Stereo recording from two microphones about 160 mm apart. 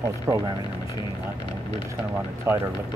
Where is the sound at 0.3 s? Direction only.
20° right (ahead or behind).